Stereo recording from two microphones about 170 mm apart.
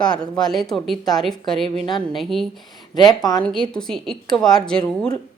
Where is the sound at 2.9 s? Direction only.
25° left (ahead or behind).